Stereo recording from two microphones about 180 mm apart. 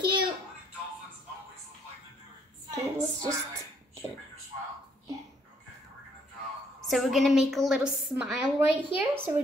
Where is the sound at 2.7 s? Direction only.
20° right (ahead or behind).